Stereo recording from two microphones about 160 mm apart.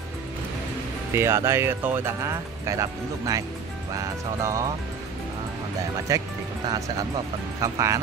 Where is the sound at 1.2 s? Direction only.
15° right (ahead or behind).